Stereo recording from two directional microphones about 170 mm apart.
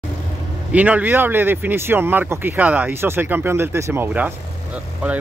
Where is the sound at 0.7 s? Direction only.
10° right (ahead or behind).